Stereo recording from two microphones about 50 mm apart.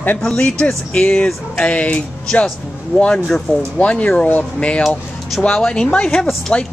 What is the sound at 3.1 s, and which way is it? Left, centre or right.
Speech, centre.